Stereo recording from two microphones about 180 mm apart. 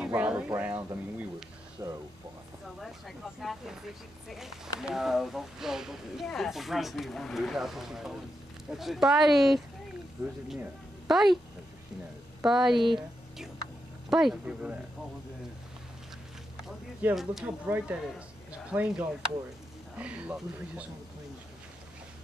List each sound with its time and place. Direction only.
0.0 s a sound: 5° right (ahead or behind)
1.8 s a sound: 20° right (ahead or behind)
2.8 s speech: centre (ahead or behind)
11.1 s speech: centre (ahead or behind)
12.4 s speech: centre (ahead or behind)
14.0 s speech: centre (ahead or behind)
16.6 s speech: centre (ahead or behind)